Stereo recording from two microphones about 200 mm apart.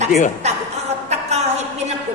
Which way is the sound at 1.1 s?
35° right (ahead or behind).